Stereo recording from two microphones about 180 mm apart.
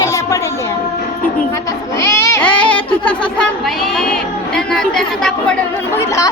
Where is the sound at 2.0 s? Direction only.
15° left (ahead or behind).